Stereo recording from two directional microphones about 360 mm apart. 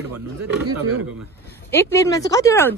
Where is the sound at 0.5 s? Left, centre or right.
Right.